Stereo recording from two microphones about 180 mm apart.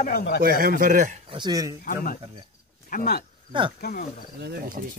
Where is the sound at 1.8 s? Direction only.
50° left (ahead or behind).